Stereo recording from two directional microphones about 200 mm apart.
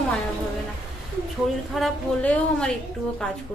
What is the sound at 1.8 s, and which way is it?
Speech, 5° left (ahead or behind).